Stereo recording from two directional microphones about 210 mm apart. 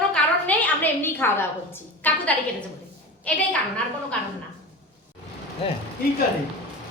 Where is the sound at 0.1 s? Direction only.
5° left (ahead or behind).